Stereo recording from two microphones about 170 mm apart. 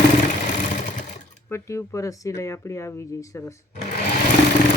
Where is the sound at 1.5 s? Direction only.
15° left (ahead or behind).